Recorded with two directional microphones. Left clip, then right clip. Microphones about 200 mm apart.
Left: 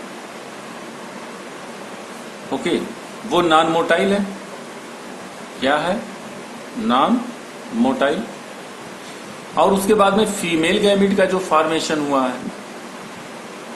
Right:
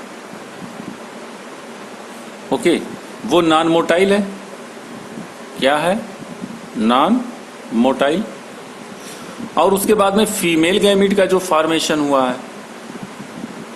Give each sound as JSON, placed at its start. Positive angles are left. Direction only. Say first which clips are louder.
{"t": 2.5, "sound": "a man's voice", "louder": "right 5 dB", "side_deg": -55}
{"t": 5.5, "sound": "a man's voice", "louder": "right 3 dB", "side_deg": -55}
{"t": 9.6, "sound": "a man's voice", "louder": "right 1 dB", "side_deg": -55}